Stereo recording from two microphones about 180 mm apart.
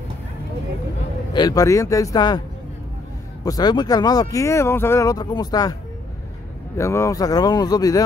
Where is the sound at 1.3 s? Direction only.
20° left (ahead or behind).